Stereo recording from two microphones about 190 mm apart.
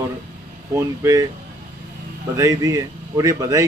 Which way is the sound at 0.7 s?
15° right (ahead or behind).